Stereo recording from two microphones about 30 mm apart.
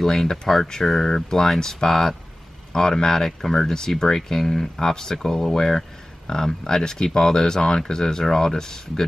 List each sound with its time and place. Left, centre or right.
0.0 s speech: centre